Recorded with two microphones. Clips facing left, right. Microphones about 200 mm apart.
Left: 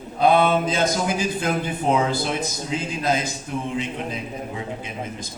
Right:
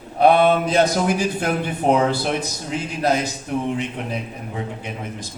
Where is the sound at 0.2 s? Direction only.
70° right (ahead or behind).